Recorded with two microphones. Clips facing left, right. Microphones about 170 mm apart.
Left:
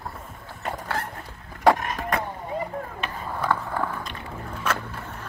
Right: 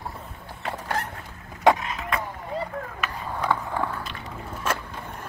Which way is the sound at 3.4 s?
10° right (ahead or behind).